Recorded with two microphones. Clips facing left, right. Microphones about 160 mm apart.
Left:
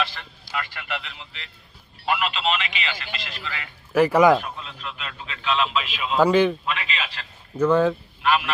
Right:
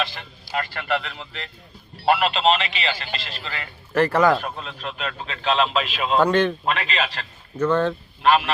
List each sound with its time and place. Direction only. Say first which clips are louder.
0.5 s a man's voice: right 6 dB; 40° right (ahead or behind)
3.9 s speech: left 2 dB; 10° left (ahead or behind)
4.4 s a man's voice: right 4 dB; 45° right (ahead or behind)
6.1 s a man's voice: left 1 dB; 5° left (ahead or behind)
6.7 s a man's voice: right 5 dB; 40° right (ahead or behind)
7.5 s a man's voice: left 2 dB; 5° left (ahead or behind)
8.2 s a man's voice: right 4 dB; 35° right (ahead or behind)